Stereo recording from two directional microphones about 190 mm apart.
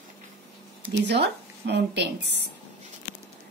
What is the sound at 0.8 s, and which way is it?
Speech, 70° right (ahead or behind).